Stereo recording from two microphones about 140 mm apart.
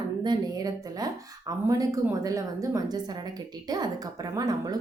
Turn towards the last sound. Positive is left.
turn(degrees=-25)  # may be behind; listen again after turning